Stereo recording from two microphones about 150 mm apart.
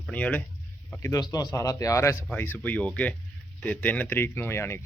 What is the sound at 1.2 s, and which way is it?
A man's voice, 25° left (ahead or behind).